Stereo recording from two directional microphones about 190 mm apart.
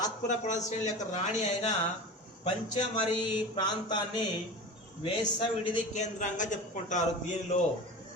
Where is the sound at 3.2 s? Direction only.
25° left (ahead or behind).